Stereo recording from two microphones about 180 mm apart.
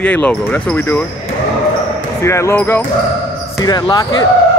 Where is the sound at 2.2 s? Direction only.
15° left (ahead or behind).